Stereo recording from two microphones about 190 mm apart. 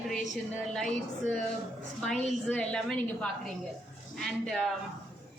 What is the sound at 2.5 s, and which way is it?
Speech, 5° left (ahead or behind).